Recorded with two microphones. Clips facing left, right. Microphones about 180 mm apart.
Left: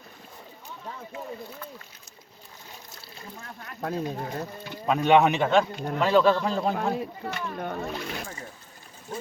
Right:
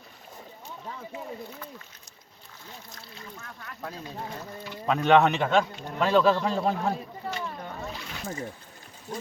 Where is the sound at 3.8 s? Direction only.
55° left (ahead or behind).